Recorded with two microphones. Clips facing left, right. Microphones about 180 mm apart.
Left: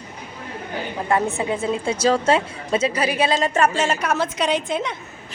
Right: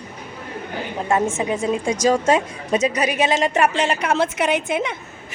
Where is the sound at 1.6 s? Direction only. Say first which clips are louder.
Right 2 dB; 15° right (ahead or behind).